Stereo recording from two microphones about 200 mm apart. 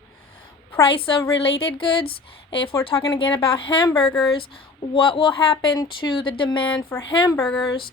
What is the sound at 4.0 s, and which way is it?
Speech, centre (ahead or behind).